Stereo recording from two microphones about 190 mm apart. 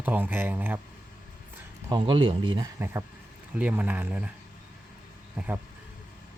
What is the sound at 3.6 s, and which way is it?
Speech, 10° right (ahead or behind).